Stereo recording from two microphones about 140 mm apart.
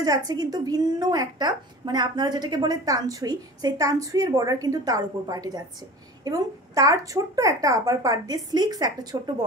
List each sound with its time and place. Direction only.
0.0 s a woman's voice: 25° right (ahead or behind)